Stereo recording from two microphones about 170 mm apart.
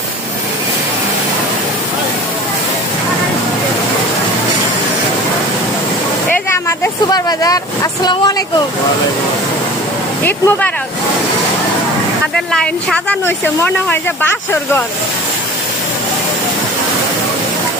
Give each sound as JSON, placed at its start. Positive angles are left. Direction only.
{"t": 6.5, "sound": "vehicle", "side_deg": 15}
{"t": 10.2, "sound": "a woman's voice", "side_deg": 10}
{"t": 12.5, "sound": "a woman's voice", "side_deg": 5}